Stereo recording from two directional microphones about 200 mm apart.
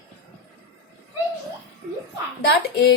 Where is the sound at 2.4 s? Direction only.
50° left (ahead or behind).